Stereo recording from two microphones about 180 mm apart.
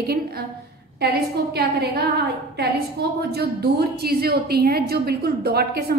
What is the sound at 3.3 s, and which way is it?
A woman's voice, 60° right (ahead or behind).